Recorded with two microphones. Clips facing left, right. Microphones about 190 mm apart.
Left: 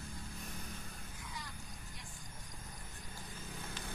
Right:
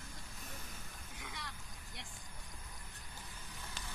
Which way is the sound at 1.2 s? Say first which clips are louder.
Right 1 dB; 80° right.